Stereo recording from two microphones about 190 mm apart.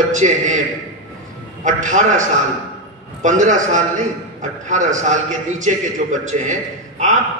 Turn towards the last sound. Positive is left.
turn(degrees=-40)  # may be behind; listen again after turning